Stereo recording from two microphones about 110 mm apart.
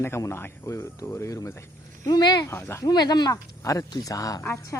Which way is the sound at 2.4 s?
20° left (ahead or behind).